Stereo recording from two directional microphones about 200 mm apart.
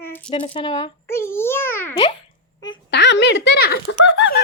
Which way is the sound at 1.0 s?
10° left (ahead or behind).